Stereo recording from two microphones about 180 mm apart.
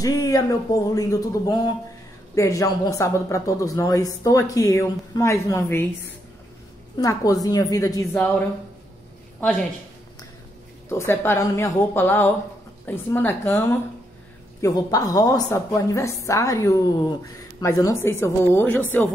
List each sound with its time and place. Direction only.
0.0 s speech: 20° left (ahead or behind)
7.0 s speech: 20° left (ahead or behind)
10.9 s speech: 15° left (ahead or behind)